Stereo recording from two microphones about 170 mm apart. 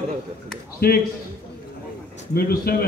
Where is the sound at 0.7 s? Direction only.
65° left (ahead or behind).